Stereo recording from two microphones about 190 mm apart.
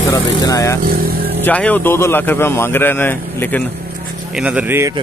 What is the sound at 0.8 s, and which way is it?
Speech, 50° right (ahead or behind).